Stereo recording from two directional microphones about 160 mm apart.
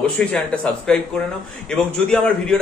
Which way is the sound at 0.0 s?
5° left (ahead or behind).